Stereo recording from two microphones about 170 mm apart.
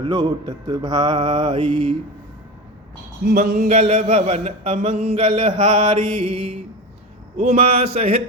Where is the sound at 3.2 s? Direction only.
60° right (ahead or behind).